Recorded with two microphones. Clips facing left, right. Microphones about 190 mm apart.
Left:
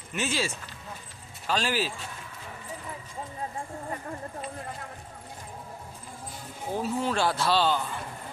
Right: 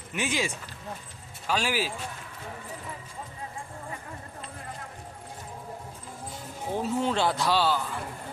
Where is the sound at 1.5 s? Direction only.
10° right (ahead or behind).